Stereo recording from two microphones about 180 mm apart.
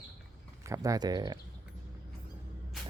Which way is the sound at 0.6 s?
20° right (ahead or behind).